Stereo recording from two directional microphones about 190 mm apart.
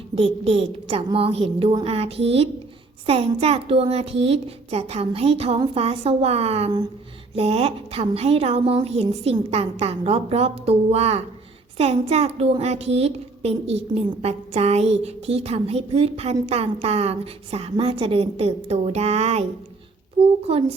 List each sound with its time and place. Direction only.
0.2 s a child's voice: 30° right (ahead or behind)